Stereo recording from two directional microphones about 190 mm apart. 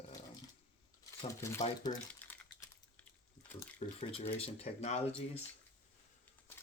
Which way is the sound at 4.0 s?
30° left (ahead or behind).